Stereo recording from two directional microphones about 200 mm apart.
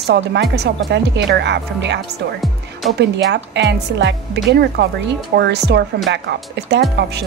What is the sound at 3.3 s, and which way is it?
Speech, 60° right (ahead or behind).